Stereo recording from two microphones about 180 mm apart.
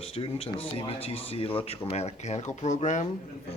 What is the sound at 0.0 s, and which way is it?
Speech, 30° left (ahead or behind).